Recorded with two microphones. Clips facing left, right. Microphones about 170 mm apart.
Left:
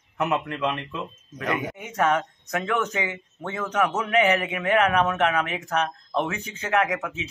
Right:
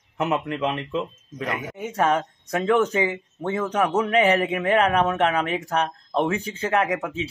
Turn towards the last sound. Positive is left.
turn(degrees=-30)  # may be behind; listen again after turning